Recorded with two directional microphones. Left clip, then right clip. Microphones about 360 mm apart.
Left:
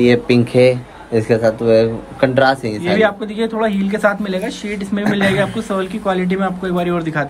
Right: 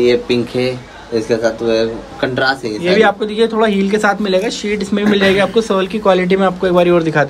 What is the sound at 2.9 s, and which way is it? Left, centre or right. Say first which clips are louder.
Speech: right 4 dB; centre.